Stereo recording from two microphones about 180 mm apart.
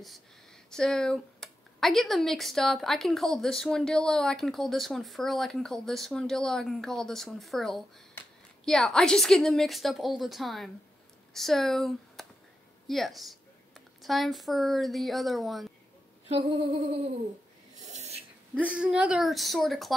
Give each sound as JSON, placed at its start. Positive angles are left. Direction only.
{"t": 0.7, "sound": "a woman's voice", "side_deg": 5}
{"t": 16.3, "sound": "a sound", "side_deg": -30}
{"t": 18.5, "sound": "speech", "side_deg": -5}